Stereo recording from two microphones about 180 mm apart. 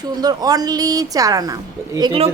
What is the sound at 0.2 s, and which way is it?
A woman's voice, 20° right (ahead or behind).